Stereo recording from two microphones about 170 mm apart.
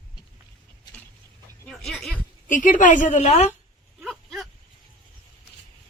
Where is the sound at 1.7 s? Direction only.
Centre (ahead or behind).